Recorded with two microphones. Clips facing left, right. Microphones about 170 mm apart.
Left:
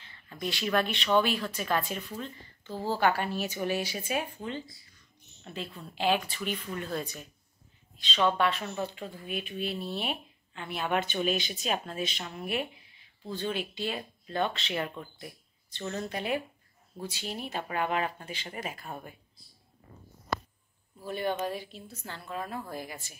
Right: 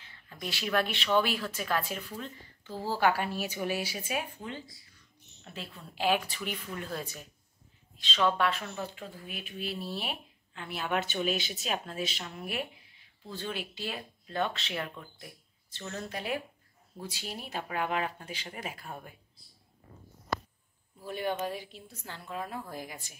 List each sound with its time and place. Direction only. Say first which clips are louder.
0.0 s a woman's voice: left 5 dB; 5° right (ahead or behind)
21.0 s a woman's voice: left 2 dB; 10° right (ahead or behind)